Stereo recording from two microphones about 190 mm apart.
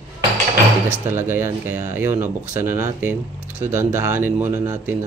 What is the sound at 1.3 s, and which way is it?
Speech, 10° right (ahead or behind).